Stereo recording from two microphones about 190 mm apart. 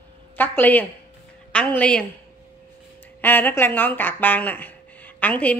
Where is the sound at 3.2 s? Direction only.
10° left (ahead or behind).